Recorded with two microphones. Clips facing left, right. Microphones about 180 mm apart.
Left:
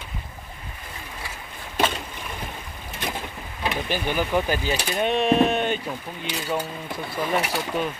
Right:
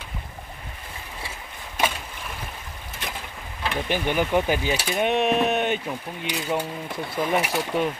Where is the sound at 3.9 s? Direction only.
20° right (ahead or behind).